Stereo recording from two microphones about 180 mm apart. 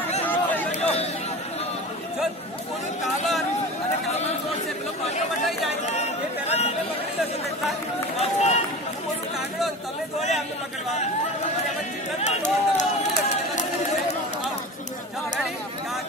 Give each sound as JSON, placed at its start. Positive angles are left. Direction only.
{"t": 0.2, "sound": "chatter", "side_deg": 10}
{"t": 5.9, "sound": "chatter", "side_deg": 35}
{"t": 8.2, "sound": "run", "side_deg": 40}
{"t": 12.2, "sound": "a sound", "side_deg": 40}